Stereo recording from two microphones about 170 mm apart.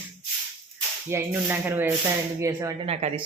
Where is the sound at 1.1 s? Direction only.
15° right (ahead or behind).